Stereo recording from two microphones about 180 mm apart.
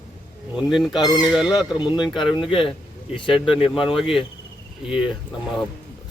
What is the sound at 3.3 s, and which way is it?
Speech, 5° right (ahead or behind).